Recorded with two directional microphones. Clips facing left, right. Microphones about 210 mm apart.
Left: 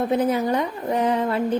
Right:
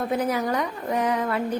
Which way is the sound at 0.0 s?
25° left (ahead or behind).